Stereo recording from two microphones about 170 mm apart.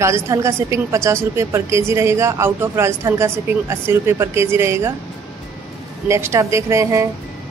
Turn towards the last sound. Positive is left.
turn(degrees=-20)  # may be behind; listen again after turning